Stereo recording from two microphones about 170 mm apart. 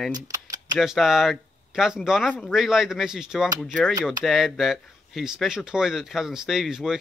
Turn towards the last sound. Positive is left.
turn(degrees=-5)  # may be behind; listen again after turning